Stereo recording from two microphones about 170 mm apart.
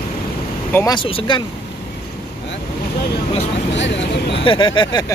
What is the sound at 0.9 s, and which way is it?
Speech, 30° left (ahead or behind).